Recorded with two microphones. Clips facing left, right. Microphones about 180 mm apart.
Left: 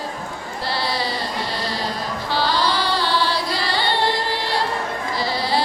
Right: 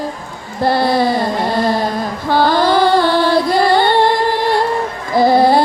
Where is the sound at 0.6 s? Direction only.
50° right (ahead or behind).